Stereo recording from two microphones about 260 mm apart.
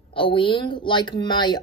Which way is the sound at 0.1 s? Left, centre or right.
Centre.